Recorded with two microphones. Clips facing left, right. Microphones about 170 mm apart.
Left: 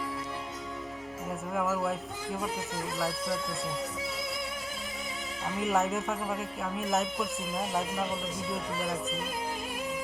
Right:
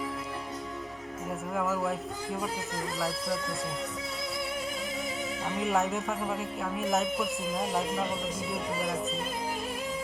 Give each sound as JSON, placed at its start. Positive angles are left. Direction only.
{"t": 1.5, "sound": "speech", "side_deg": 0}
{"t": 5.6, "sound": "speech", "side_deg": 0}